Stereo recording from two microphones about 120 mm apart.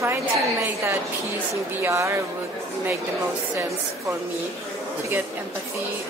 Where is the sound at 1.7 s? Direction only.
25° right (ahead or behind).